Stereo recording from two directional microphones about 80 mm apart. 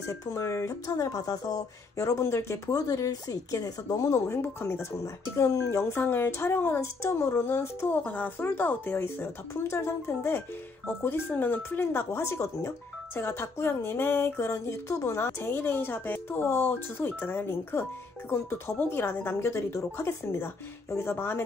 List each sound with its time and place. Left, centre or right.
0.1 s speech: left